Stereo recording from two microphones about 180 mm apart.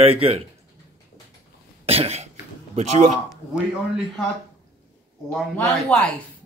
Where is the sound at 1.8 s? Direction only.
35° right (ahead or behind).